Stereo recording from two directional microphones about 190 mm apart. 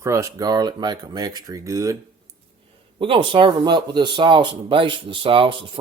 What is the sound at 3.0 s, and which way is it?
Speech, 25° right (ahead or behind).